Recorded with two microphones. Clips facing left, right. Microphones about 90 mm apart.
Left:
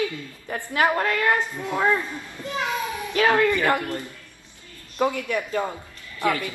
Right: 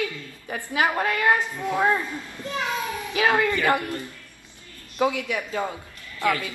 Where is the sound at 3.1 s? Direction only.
10° right (ahead or behind).